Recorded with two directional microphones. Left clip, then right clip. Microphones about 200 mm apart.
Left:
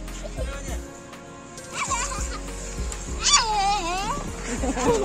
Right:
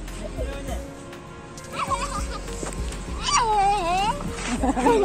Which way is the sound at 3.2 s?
60° left (ahead or behind).